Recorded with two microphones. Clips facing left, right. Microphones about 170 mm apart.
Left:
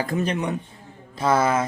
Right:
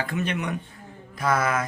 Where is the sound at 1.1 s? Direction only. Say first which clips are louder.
Left 4 dB; 30° left (ahead or behind).